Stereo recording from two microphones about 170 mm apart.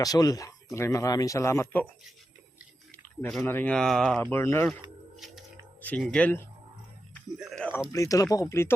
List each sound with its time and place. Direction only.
0.0 s speech: 20° left (ahead or behind)
2.9 s speech: 5° left (ahead or behind)
4.3 s speech: 15° left (ahead or behind)
5.8 s speech: 5° left (ahead or behind)
7.1 s a sound: centre (ahead or behind)
7.9 s speech: 20° left (ahead or behind)